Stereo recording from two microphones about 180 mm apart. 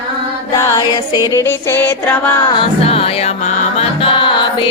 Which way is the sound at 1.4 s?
10° left (ahead or behind).